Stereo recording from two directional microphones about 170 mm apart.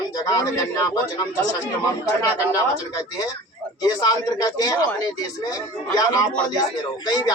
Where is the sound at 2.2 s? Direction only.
20° left (ahead or behind).